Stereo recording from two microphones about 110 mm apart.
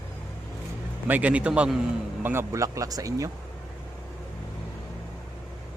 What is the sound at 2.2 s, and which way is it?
Speech, 20° right (ahead or behind).